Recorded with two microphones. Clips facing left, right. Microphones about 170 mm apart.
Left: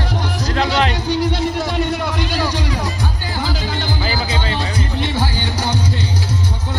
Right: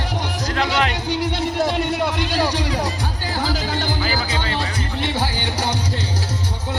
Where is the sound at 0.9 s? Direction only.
25° right (ahead or behind).